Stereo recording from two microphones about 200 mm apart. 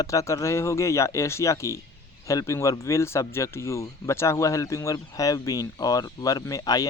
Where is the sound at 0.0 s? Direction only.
15° left (ahead or behind).